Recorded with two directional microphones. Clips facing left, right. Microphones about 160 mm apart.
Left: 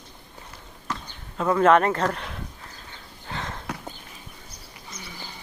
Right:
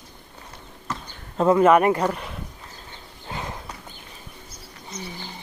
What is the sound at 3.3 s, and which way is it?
Horse, 15° right (ahead or behind).